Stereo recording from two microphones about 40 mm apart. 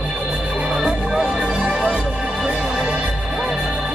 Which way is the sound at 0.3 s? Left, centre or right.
Centre.